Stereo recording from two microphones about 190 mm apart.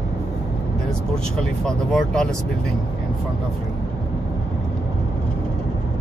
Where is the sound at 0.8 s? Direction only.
5° left (ahead or behind).